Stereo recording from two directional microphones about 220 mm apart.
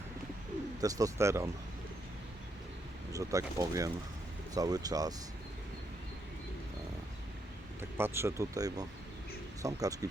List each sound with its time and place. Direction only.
0.8 s speech: 15° right (ahead or behind)
3.1 s speech: 15° right (ahead or behind)
7.8 s speech: 10° right (ahead or behind)